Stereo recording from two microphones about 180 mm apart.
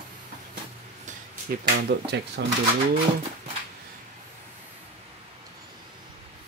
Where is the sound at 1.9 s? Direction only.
70° right (ahead or behind).